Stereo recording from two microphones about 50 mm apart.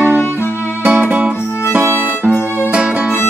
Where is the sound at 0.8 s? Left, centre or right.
Right.